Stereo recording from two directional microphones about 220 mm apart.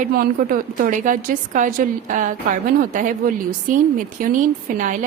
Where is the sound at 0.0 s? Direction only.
40° right (ahead or behind).